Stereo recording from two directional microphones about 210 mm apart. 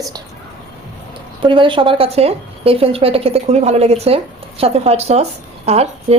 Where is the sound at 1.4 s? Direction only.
25° right (ahead or behind).